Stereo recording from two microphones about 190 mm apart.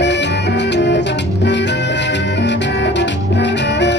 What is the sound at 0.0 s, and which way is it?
Music, 65° left (ahead or behind).